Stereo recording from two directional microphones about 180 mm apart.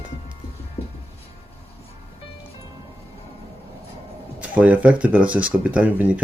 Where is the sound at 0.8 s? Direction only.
35° left (ahead or behind).